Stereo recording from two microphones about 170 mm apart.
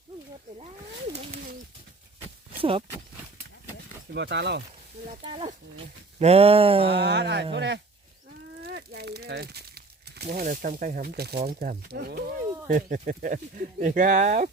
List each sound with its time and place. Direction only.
1.1 s a sound: 40° right (ahead or behind)
2.6 s speech: 35° right (ahead or behind)
4.1 s speech: 90° right
5.2 s speech: 30° right (ahead or behind)
6.9 s speech: 80° right
8.6 s crumpling: 70° right (ahead or behind)
10.2 s speech: 50° right (ahead or behind)
11.1 s speech: 70° right (ahead or behind)
12.6 s speech: 50° right (ahead or behind)